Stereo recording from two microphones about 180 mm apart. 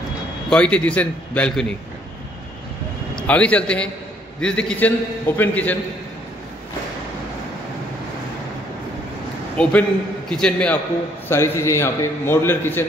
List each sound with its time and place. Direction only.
0.5 s a man's voice: 5° left (ahead or behind)
3.2 s a man's voice: 5° left (ahead or behind)
9.6 s a man's voice: 5° left (ahead or behind)